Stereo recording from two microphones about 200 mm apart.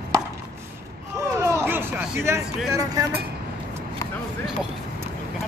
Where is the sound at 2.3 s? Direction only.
15° right (ahead or behind).